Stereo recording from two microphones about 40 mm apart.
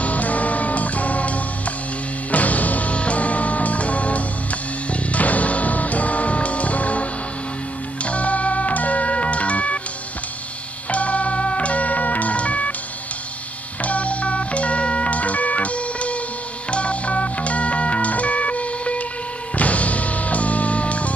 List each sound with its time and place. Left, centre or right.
0.0 s music: left
10.9 s music: left
13.7 s music: left